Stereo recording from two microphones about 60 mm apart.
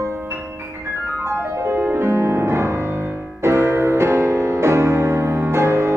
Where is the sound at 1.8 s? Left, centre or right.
Right.